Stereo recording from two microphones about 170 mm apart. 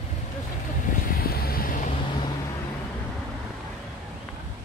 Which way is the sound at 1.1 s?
60° left (ahead or behind).